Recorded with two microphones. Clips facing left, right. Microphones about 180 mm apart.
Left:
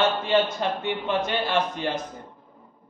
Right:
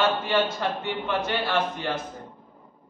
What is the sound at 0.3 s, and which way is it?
Mantra, 20° left (ahead or behind).